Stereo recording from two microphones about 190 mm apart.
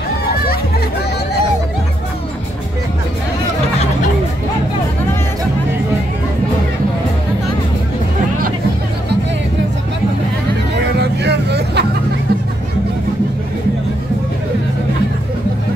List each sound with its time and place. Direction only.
11.0 s vehicle: 60° right (ahead or behind)